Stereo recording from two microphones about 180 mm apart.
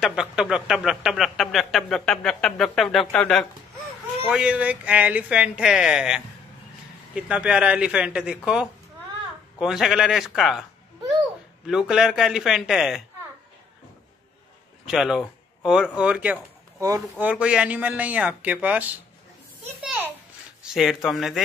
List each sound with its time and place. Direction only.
0.0 s speech: 5° right (ahead or behind)
4.3 s speech: 5° right (ahead or behind)
9.6 s speech: centre (ahead or behind)
11.6 s speech: 5° right (ahead or behind)
14.9 s speech: centre (ahead or behind)